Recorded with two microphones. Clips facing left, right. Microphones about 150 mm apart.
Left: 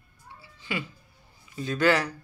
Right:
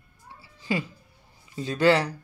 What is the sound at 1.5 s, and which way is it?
Speech, 30° right (ahead or behind).